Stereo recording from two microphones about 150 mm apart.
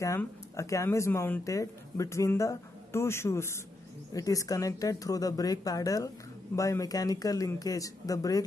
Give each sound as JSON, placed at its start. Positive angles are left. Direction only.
{"t": 0.0, "sound": "speech", "side_deg": 20}